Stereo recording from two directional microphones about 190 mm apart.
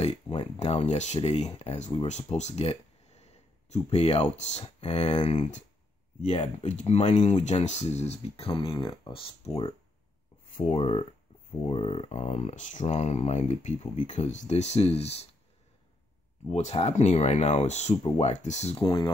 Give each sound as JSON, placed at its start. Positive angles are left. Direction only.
{"t": 0.0, "sound": "speech", "side_deg": 35}
{"t": 16.4, "sound": "speech", "side_deg": 35}